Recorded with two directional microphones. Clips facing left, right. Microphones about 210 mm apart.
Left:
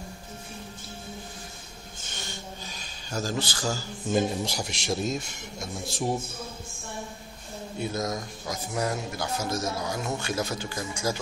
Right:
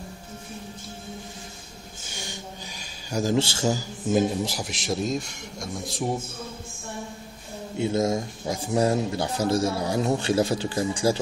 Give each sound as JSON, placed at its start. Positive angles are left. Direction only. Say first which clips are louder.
{"t": 2.1, "sound": "a sound", "louder": "right 2 dB", "side_deg": -15}
{"t": 3.3, "sound": "a man's voice", "louder": "right 6 dB", "side_deg": -25}
{"t": 4.1, "sound": "a man's voice", "louder": "right 3 dB", "side_deg": -5}
{"t": 7.7, "sound": "speech", "louder": "right 7 dB", "side_deg": -25}